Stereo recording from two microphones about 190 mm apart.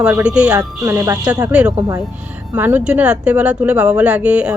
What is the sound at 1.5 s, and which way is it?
Speech, 5° right (ahead or behind).